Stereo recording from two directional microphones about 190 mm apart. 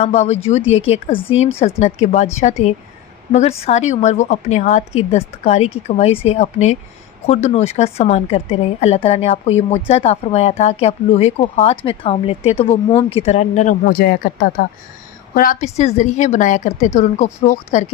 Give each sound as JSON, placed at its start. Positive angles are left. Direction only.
{"t": 0.0, "sound": "speech", "side_deg": 35}
{"t": 3.3, "sound": "speech", "side_deg": 35}
{"t": 13.8, "sound": "speech", "side_deg": 55}